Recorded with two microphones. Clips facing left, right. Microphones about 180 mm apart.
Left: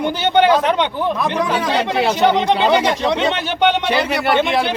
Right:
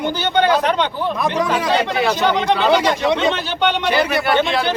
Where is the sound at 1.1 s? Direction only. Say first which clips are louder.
Even; centre (ahead or behind).